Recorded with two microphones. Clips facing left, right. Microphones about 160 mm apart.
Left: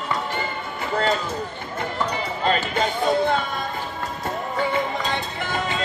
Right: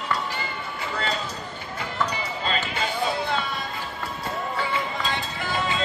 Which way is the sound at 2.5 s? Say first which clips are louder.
Left 6 dB; 50° left (ahead or behind).